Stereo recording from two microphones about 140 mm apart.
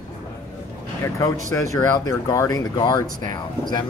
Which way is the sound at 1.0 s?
20° left (ahead or behind).